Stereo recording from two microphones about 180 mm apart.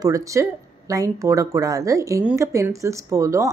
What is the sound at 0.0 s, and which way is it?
Speech, 20° right (ahead or behind).